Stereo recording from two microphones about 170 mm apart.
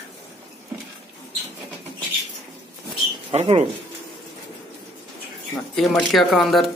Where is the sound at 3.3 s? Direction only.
35° right (ahead or behind).